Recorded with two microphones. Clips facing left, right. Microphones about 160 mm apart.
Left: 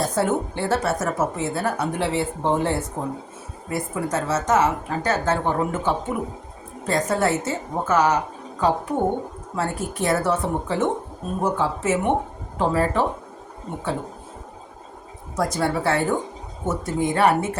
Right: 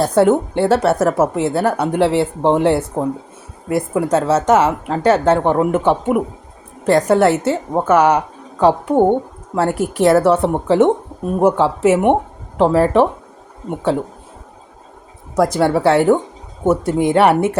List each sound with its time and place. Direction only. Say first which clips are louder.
0.0 s a woman's voice: right 9 dB; 70° right (ahead or behind)
15.4 s a woman's voice: right 8 dB; 75° right (ahead or behind)